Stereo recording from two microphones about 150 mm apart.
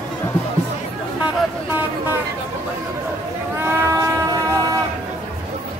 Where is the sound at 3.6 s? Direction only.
20° right (ahead or behind).